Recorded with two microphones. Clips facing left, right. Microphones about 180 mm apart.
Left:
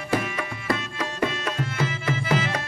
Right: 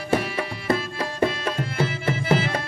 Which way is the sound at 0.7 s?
30° right (ahead or behind).